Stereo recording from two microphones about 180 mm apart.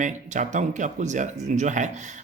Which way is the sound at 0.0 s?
45° right (ahead or behind).